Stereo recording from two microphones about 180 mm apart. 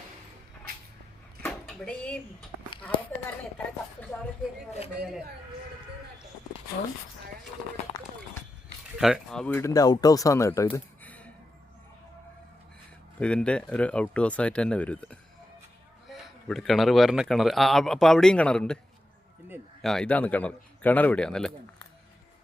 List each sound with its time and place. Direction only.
0.7 s a sound: 60° right (ahead or behind)
1.6 s speech: 5° left (ahead or behind)
9.0 s speech: centre (ahead or behind)
13.1 s speech: 5° left (ahead or behind)
19.8 s speech: 5° left (ahead or behind)